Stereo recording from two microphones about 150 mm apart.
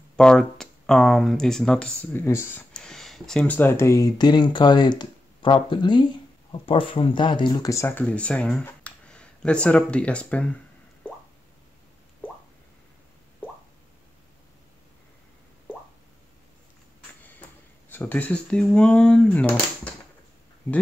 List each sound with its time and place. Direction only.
0.1 s speech: 5° left (ahead or behind)
2.7 s speech: 5° left (ahead or behind); by 7.7 s 30° left (ahead or behind)
7.7 s speech: 15° left (ahead or behind)
17.4 s speech: 15° left (ahead or behind)